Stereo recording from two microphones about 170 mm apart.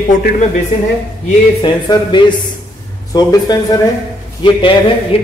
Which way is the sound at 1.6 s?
30° left (ahead or behind).